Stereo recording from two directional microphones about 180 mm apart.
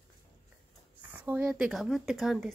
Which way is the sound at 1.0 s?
10° right (ahead or behind).